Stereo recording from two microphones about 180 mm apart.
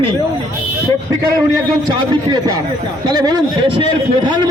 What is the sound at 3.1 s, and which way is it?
Speech, 20° right (ahead or behind).